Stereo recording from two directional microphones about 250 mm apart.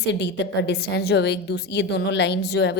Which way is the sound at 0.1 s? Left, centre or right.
Left.